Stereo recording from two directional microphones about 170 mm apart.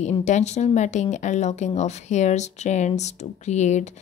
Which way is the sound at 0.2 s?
45° left (ahead or behind).